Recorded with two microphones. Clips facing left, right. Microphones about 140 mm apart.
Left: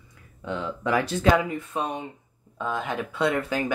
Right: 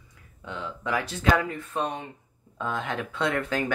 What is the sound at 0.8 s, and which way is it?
Speech, 45° left (ahead or behind).